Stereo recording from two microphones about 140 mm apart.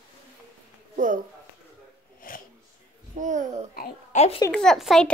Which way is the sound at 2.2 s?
85° left.